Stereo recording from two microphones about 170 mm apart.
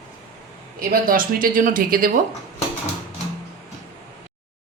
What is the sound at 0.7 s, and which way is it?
Speech, 55° right (ahead or behind).